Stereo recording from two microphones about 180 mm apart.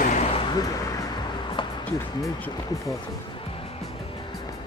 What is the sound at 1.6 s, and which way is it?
Music, 30° left (ahead or behind).